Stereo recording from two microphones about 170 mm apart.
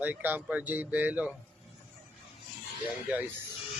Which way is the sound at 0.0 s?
10° right (ahead or behind).